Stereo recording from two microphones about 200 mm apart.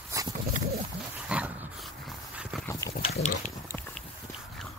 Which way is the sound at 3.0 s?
35° left (ahead or behind).